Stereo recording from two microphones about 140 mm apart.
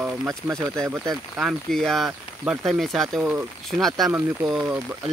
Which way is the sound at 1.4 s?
Centre (ahead or behind).